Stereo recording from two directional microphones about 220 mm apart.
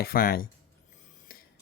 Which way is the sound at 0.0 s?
40° left (ahead or behind).